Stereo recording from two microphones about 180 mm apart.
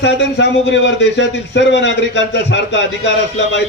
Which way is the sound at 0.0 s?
80° left.